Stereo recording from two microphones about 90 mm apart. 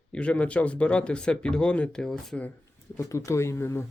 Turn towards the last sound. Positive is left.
turn(degrees=30)  # may be behind; listen again after turning